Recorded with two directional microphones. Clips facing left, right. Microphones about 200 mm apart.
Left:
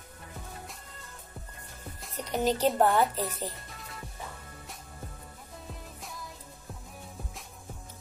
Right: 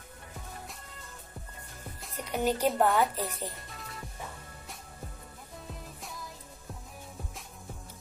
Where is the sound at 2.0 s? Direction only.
10° right (ahead or behind).